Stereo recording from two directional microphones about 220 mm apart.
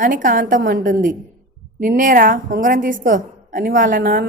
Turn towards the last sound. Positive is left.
turn(degrees=-40)  # may be behind; listen again after turning